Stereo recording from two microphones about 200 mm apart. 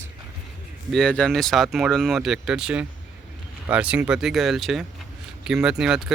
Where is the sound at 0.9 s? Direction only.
5° left (ahead or behind).